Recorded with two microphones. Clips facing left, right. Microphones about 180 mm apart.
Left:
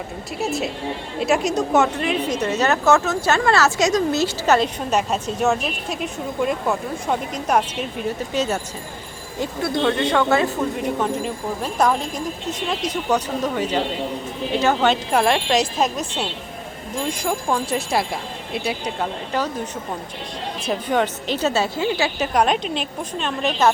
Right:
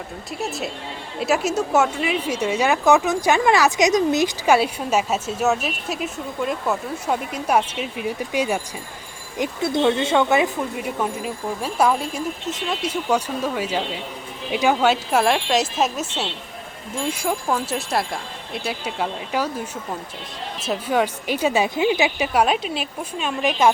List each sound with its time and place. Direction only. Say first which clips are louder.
0.3 s a woman's voice: left 4 dB; centre (ahead or behind); by 10.5 s 15° right (ahead or behind)
10.8 s a woman's voice: left 3 dB; 5° right (ahead or behind)
20.7 s a woman's voice: even; 5° right (ahead or behind)